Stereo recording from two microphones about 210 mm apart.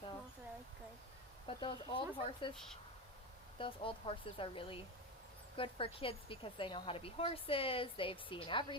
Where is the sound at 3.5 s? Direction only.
25° left (ahead or behind).